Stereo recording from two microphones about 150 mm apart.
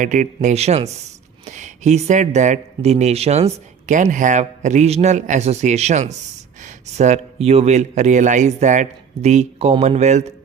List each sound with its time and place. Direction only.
0.0 s speech: 55° right (ahead or behind)